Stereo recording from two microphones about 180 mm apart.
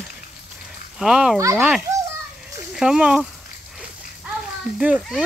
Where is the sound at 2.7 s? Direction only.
5° right (ahead or behind).